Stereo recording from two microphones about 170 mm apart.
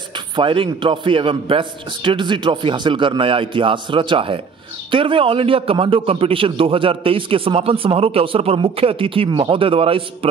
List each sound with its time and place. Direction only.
0.1 s a man's voice: 30° right (ahead or behind)